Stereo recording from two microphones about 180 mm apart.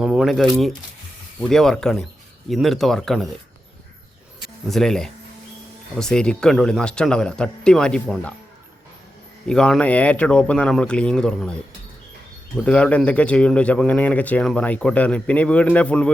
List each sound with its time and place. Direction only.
0.0 s a sound: 5° right (ahead or behind)
1.4 s speech: centre (ahead or behind)
4.4 s speech: centre (ahead or behind)
9.5 s speech: 5° left (ahead or behind)
12.6 s speech: 5° left (ahead or behind)